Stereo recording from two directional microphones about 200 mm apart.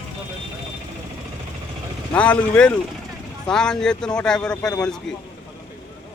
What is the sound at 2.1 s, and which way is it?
Speech, 5° left (ahead or behind).